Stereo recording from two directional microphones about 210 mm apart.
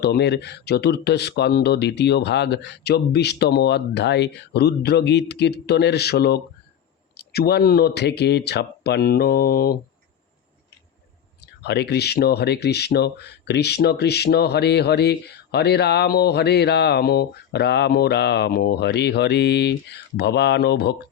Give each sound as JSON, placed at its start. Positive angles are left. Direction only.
{"t": 0.0, "sound": "speech", "side_deg": 50}
{"t": 11.6, "sound": "speech", "side_deg": 55}